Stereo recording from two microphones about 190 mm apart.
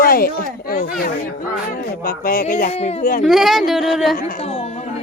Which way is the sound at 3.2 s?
Centre (ahead or behind).